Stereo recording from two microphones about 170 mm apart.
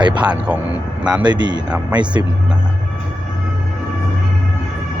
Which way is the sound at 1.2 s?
25° right (ahead or behind).